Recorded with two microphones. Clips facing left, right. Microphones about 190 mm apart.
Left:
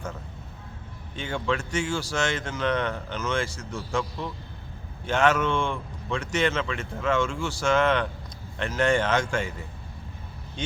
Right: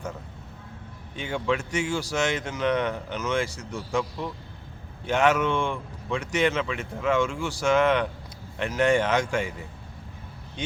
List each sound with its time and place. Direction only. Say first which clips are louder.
1.1 s speech: right 1 dB; 15° right (ahead or behind)